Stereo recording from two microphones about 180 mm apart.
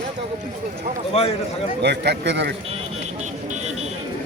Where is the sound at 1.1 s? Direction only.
35° left (ahead or behind).